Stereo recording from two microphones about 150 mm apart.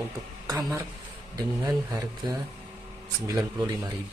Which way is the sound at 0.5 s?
25° right (ahead or behind).